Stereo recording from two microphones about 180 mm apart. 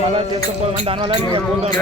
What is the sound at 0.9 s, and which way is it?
Speech, 30° right (ahead or behind).